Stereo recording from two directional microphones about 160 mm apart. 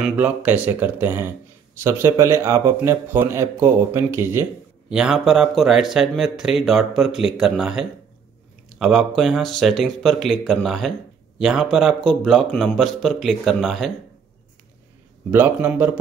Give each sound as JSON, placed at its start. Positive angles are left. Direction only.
{"t": 0.0, "sound": "speech", "side_deg": -10}
{"t": 4.8, "sound": "speech", "side_deg": -5}
{"t": 15.3, "sound": "speech", "side_deg": -10}